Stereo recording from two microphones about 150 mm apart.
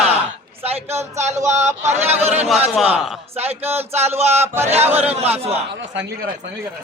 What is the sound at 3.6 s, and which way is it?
Speech, 15° right (ahead or behind).